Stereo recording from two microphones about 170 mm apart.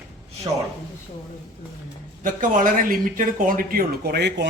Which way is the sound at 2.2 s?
55° right (ahead or behind).